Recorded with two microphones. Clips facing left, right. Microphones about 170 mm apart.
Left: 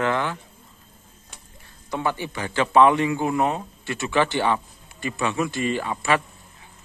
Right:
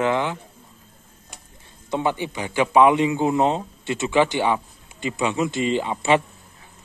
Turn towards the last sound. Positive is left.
turn(degrees=-20)  # may be behind; listen again after turning